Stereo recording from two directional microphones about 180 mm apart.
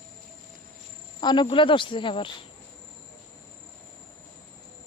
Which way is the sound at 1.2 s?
25° left (ahead or behind).